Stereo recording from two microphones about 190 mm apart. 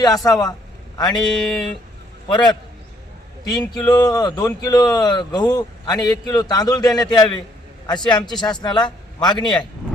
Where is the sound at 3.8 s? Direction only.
20° left (ahead or behind).